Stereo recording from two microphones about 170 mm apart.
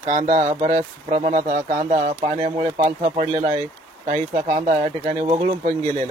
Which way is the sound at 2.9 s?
50° right (ahead or behind).